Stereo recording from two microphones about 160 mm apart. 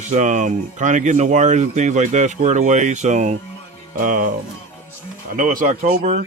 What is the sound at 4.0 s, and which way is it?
Speech, 55° right (ahead or behind).